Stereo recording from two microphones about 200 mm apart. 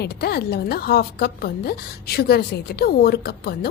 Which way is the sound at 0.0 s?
55° left (ahead or behind).